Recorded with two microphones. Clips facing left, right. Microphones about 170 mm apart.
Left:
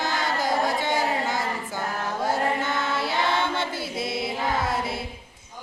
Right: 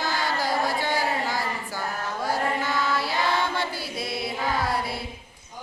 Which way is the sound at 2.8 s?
25° left (ahead or behind).